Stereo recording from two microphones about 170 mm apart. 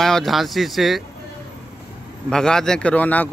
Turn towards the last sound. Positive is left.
turn(degrees=10)  # may be behind; listen again after turning